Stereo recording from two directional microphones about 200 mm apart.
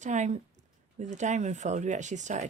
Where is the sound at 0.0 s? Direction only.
35° right (ahead or behind).